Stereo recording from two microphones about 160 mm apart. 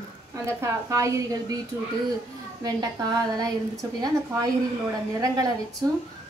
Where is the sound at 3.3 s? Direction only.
25° right (ahead or behind).